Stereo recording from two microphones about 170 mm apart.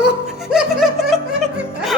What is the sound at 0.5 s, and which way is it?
Music, centre (ahead or behind).